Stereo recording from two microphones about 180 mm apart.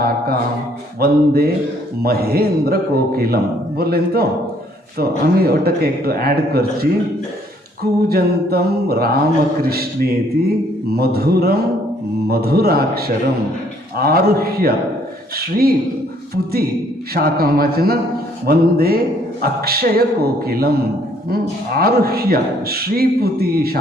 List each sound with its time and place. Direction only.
0.9 s a man's voice: 60° right (ahead or behind)
8.1 s a man's voice: 60° right (ahead or behind)
21.8 s a man's voice: 60° right (ahead or behind)